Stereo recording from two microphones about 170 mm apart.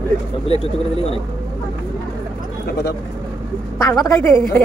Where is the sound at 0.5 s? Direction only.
35° left (ahead or behind).